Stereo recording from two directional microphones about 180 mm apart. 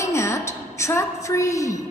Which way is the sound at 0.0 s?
15° left (ahead or behind).